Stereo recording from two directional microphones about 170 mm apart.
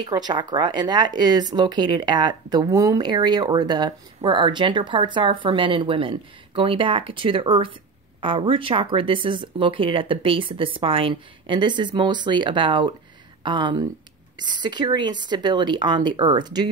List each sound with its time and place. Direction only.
0.0 s speech: 25° right (ahead or behind)